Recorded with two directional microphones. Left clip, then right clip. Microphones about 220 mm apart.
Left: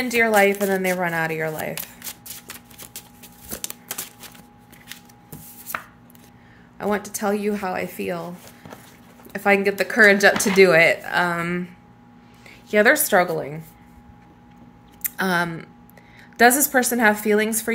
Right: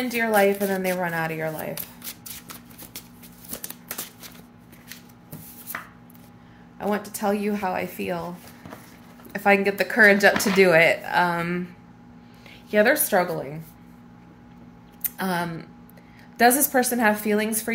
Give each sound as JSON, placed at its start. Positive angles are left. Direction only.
{"t": 0.0, "sound": "speech", "side_deg": 25}
{"t": 6.8, "sound": "speech", "side_deg": 25}
{"t": 9.3, "sound": "speech", "side_deg": 15}
{"t": 12.7, "sound": "speech", "side_deg": 25}
{"t": 15.0, "sound": "speech", "side_deg": 20}